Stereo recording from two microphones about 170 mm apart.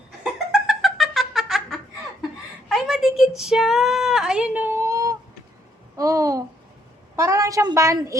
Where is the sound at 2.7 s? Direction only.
Centre (ahead or behind).